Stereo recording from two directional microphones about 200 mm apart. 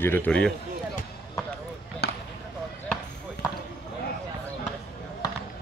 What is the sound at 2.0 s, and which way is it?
Basketball bounce, 55° left (ahead or behind).